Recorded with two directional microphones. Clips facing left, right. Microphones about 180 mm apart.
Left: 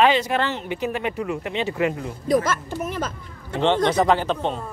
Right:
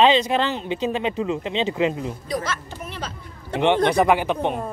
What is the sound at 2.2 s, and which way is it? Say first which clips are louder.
Speech: left 11 dB; 50° left (ahead or behind).